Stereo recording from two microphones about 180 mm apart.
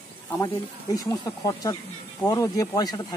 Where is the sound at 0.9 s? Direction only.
20° left (ahead or behind).